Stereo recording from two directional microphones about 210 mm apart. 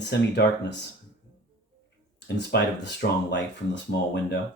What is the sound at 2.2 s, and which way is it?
Speech, 55° left (ahead or behind).